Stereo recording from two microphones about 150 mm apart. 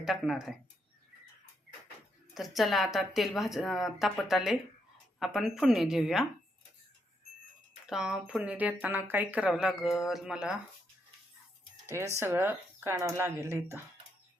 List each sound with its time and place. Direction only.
0.0 s speech: centre (ahead or behind)
2.3 s speech: centre (ahead or behind)
7.9 s speech: 5° right (ahead or behind)
11.9 s speech: 20° right (ahead or behind)